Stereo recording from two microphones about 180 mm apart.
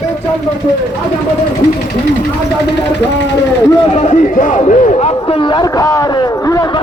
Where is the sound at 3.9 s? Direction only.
40° left (ahead or behind); by 6.0 s 20° left (ahead or behind).